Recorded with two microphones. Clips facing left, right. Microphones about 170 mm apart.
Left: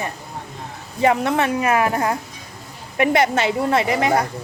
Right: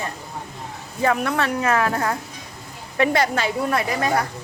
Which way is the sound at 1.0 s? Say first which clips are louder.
Left 3 dB; 20° left (ahead or behind).